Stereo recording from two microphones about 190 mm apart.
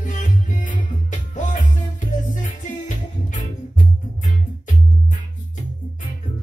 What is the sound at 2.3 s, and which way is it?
Music, 40° left (ahead or behind).